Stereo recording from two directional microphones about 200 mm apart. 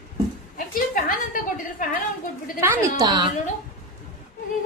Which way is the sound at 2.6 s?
15° right (ahead or behind).